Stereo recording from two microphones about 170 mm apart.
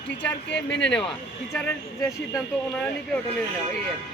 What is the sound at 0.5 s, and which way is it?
Speech, 90° left.